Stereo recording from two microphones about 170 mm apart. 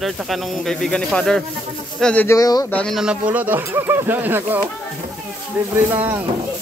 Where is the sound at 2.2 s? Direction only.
20° left (ahead or behind).